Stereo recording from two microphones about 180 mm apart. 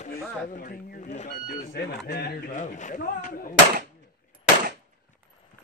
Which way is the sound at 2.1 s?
60° left (ahead or behind).